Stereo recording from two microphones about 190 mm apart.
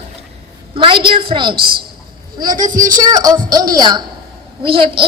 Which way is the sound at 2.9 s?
20° right (ahead or behind).